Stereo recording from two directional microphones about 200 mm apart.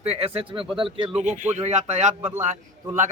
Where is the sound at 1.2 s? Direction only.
35° right (ahead or behind).